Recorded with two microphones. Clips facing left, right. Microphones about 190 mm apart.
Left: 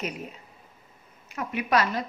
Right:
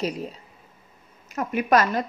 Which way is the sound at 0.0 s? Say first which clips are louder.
Right 6 dB; 35° right (ahead or behind).